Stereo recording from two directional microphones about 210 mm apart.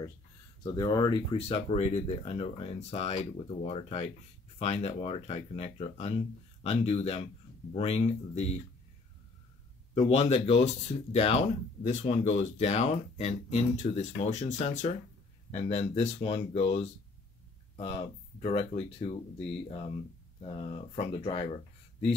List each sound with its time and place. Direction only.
0.7 s speech: 15° left (ahead or behind)
9.9 s speech: 30° left (ahead or behind)